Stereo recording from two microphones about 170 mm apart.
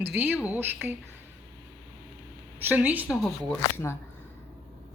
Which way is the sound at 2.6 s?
10° right (ahead or behind).